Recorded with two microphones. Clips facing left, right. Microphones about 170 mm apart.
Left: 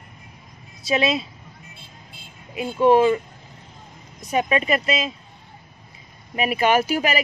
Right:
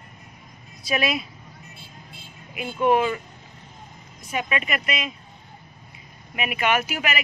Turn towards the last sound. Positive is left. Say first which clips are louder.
# left 5 dB
turn(degrees=35)  # may be behind; listen again after turning